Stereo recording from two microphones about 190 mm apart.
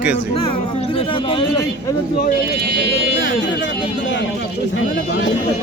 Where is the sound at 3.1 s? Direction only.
75° left (ahead or behind).